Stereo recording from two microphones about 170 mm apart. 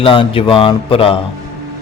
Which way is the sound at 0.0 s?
30° left (ahead or behind).